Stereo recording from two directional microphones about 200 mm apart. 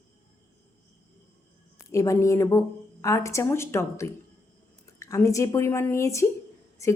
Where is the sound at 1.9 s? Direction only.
15° left (ahead or behind).